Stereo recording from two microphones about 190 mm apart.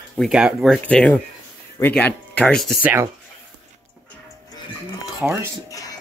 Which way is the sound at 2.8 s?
10° right (ahead or behind).